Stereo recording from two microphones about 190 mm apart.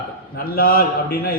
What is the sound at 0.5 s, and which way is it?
Speech, 50° left (ahead or behind).